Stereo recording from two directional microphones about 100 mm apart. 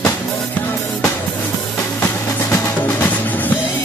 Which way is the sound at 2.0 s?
30° left (ahead or behind).